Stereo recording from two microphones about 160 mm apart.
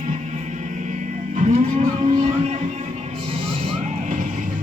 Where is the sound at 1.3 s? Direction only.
45° right (ahead or behind).